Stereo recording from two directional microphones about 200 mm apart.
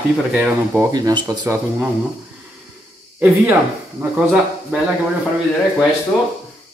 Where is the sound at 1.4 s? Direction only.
10° right (ahead or behind).